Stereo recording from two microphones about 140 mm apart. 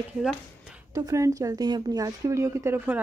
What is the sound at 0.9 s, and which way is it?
Speech, 25° right (ahead or behind).